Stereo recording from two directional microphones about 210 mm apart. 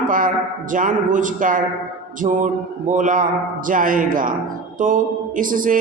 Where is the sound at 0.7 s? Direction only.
40° right (ahead or behind).